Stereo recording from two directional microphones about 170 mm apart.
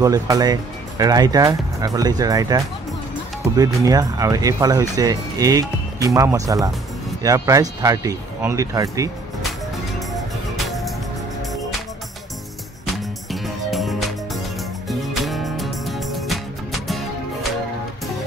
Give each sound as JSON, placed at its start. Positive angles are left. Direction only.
{"t": 0.0, "sound": "speech", "side_deg": -20}
{"t": 9.9, "sound": "music", "side_deg": 0}
{"t": 12.8, "sound": "music", "side_deg": 0}